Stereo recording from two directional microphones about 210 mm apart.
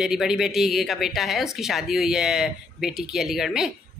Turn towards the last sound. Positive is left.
turn(degrees=0)  # may be behind; listen again after turning